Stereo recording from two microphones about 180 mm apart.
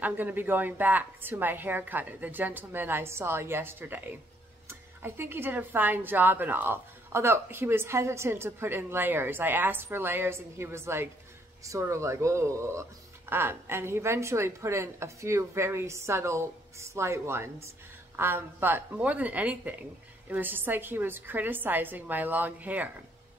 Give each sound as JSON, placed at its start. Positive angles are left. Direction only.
{"t": 0.0, "sound": "speech", "side_deg": -10}